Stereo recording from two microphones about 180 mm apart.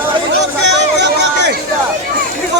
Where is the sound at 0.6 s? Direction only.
75° right (ahead or behind).